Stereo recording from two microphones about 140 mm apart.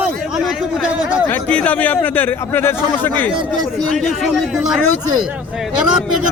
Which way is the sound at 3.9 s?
Centre (ahead or behind).